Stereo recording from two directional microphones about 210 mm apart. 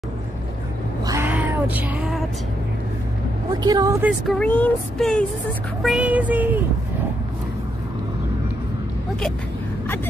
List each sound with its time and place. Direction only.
1.0 s music: 10° right (ahead or behind)
3.5 s child singing: 20° right (ahead or behind)
4.0 s speech: centre (ahead or behind)
5.8 s child singing: 5° right (ahead or behind)